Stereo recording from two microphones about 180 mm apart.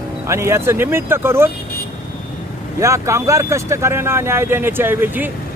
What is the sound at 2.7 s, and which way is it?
Speech, 15° right (ahead or behind).